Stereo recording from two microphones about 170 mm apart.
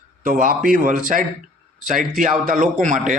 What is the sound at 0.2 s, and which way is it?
A man's voice, 50° right (ahead or behind).